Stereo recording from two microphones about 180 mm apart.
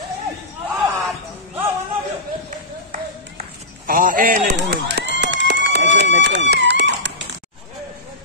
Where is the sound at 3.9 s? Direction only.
50° right (ahead or behind).